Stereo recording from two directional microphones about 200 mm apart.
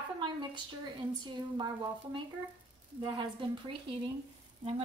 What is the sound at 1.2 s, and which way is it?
A woman's voice, 20° right (ahead or behind).